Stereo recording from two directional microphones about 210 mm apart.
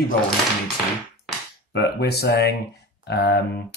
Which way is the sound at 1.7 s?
50° left (ahead or behind).